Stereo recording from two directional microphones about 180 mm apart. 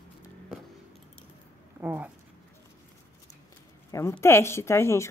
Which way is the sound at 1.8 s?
10° right (ahead or behind).